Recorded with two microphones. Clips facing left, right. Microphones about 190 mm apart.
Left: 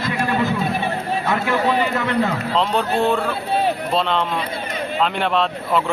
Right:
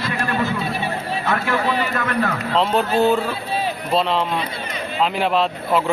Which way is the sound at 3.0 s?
5° right (ahead or behind).